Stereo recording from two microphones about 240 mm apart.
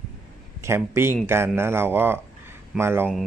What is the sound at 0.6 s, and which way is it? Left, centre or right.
Speech, centre.